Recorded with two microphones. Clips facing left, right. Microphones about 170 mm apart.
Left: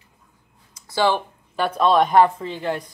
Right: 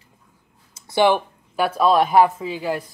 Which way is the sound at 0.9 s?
15° right (ahead or behind).